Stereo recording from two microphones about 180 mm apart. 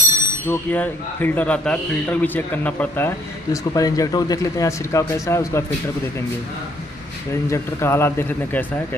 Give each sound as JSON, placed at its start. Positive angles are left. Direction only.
{"t": 0.5, "sound": "a man's voice", "side_deg": 10}
{"t": 7.4, "sound": "a man's voice", "side_deg": 15}